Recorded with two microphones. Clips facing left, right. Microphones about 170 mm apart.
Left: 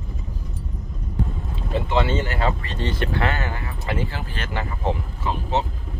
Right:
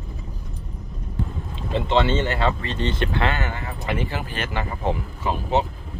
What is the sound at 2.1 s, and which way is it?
Speech, 25° right (ahead or behind).